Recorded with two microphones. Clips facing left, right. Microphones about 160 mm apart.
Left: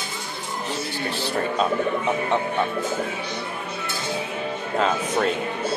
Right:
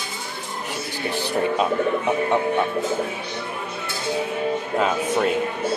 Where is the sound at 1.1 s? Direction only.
15° right (ahead or behind).